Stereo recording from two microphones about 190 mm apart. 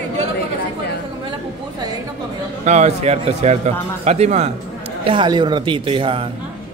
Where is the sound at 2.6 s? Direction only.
35° right (ahead or behind).